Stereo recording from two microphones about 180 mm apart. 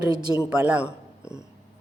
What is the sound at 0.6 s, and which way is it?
Speech, 5° right (ahead or behind).